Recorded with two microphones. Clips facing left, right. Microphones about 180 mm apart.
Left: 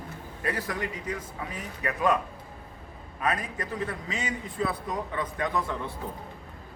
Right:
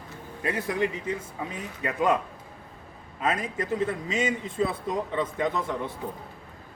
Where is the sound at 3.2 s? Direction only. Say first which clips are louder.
Right 2 dB; 25° right (ahead or behind).